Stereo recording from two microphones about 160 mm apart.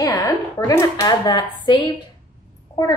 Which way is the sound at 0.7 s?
20° left (ahead or behind).